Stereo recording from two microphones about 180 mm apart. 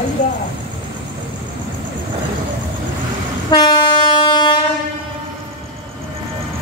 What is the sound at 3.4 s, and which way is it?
Train, 25° left (ahead or behind).